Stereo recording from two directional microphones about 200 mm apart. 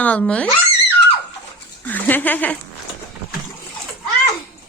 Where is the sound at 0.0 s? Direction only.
5° left (ahead or behind).